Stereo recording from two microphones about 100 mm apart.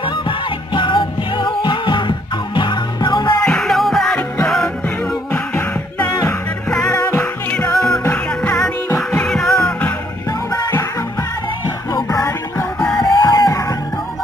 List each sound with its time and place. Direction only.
0.0 s music: 55° left (ahead or behind)
3.4 s music: 5° left (ahead or behind)
5.3 s music: 15° left (ahead or behind)
6.9 s music: 25° left (ahead or behind)
8.3 s music: 10° left (ahead or behind)
9.7 s music: 15° left (ahead or behind)
10.5 s music: 35° left (ahead or behind)
11.9 s music: 35° left (ahead or behind)